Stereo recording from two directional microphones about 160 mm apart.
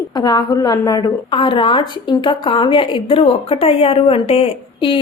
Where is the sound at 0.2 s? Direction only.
25° left (ahead or behind).